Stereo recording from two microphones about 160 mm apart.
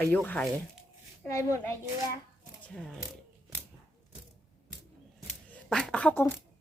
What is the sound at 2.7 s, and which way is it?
Speech, 5° left (ahead or behind).